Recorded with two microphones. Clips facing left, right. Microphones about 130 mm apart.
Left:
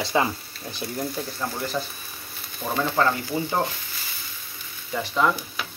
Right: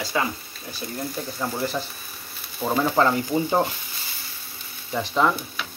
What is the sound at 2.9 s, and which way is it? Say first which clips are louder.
Speech: right 1 dB; 20° right (ahead or behind).